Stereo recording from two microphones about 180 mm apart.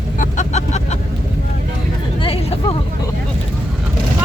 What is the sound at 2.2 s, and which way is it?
Hubbub, 30° left (ahead or behind).